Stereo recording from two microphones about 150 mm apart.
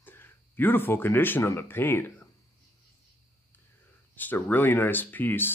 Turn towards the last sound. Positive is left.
turn(degrees=15)  # may be behind; listen again after turning